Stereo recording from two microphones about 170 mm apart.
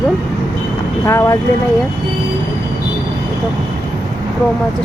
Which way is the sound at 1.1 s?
15° left (ahead or behind).